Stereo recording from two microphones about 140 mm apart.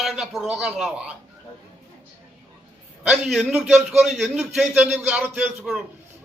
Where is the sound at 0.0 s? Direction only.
Centre (ahead or behind).